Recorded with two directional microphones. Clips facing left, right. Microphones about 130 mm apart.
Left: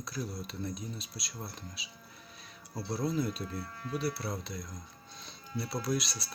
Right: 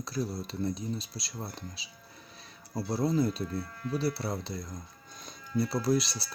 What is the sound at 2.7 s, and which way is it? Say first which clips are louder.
Speech: right 4 dB; 25° right (ahead or behind).